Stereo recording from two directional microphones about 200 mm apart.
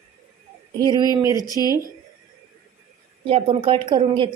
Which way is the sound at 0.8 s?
20° right (ahead or behind).